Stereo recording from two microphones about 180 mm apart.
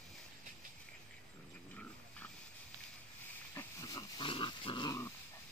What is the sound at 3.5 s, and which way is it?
Dog, 20° left (ahead or behind).